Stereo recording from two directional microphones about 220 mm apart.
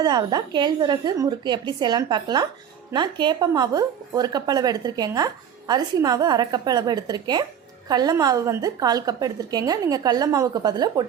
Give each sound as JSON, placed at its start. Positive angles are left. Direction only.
{"t": 0.0, "sound": "a woman's voice", "side_deg": -20}